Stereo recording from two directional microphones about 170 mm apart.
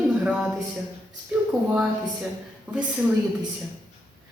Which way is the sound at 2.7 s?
5° right (ahead or behind).